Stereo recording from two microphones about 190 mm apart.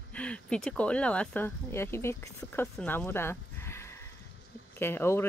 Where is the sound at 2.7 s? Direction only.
10° left (ahead or behind).